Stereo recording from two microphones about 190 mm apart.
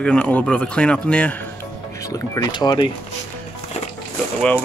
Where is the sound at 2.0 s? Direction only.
15° left (ahead or behind).